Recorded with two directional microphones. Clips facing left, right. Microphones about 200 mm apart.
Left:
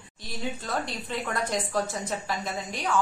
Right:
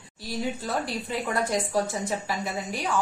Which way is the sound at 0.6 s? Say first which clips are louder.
Right 2 dB; 10° right (ahead or behind).